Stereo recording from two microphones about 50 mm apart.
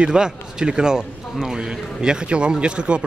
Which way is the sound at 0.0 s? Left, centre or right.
Centre.